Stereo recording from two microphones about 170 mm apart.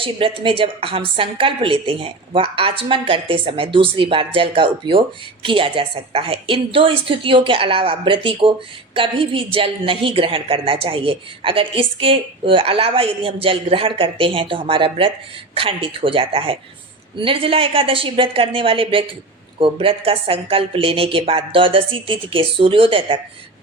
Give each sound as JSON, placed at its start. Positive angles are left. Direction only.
{"t": 0.0, "sound": "a woman's voice", "side_deg": -30}